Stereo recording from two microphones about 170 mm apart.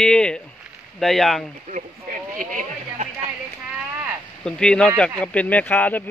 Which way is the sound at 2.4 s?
50° right (ahead or behind).